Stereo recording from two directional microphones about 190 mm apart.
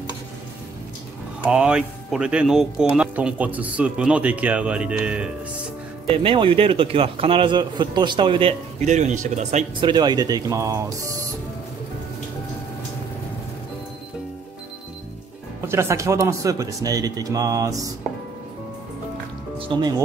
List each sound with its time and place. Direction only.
1.4 s speech: 5° right (ahead or behind)
6.0 s a man's voice: 25° right (ahead or behind)
8.8 s speech: 40° right (ahead or behind)
9.8 s a man's voice: 25° right (ahead or behind)
15.6 s speech: 15° right (ahead or behind)
19.6 s speech: 25° right (ahead or behind)